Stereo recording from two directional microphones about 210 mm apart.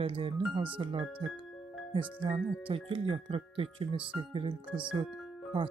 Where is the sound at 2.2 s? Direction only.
25° right (ahead or behind).